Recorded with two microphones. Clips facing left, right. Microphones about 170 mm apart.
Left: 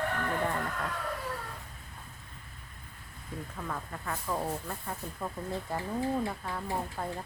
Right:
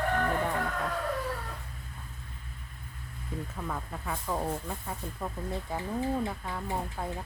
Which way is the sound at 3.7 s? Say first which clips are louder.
Even; 10° right (ahead or behind).